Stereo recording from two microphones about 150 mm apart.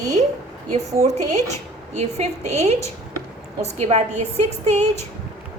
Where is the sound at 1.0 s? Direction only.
50° right (ahead or behind).